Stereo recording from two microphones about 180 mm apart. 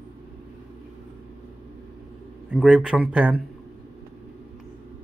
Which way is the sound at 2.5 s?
5° right (ahead or behind).